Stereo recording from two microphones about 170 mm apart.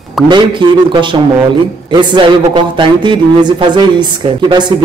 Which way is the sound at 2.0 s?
30° right (ahead or behind).